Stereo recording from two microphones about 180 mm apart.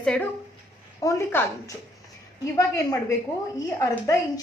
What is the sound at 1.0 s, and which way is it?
A woman's voice, 15° left (ahead or behind).